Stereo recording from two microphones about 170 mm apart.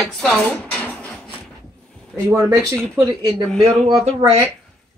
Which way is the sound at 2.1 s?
15° right (ahead or behind).